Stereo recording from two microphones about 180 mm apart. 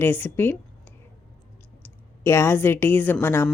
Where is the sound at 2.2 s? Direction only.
15° left (ahead or behind).